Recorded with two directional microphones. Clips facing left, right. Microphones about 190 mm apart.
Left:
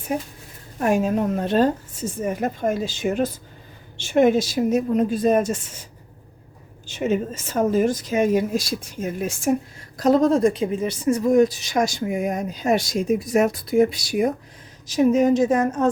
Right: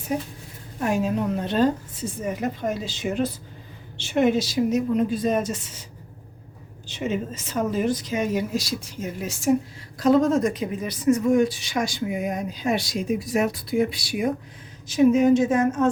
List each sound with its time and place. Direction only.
0.1 s speech: 50° left (ahead or behind)
6.8 s speech: 45° left (ahead or behind)
10.0 s a woman's voice: 35° left (ahead or behind)